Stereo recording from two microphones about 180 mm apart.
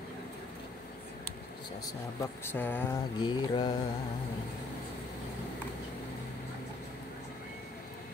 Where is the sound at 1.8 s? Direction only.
15° left (ahead or behind).